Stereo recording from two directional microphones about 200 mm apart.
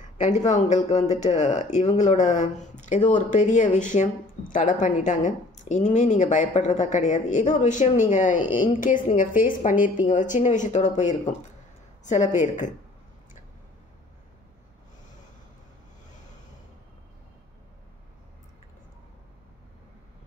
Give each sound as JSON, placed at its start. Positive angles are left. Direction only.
{"t": 0.5, "sound": "speech", "side_deg": 35}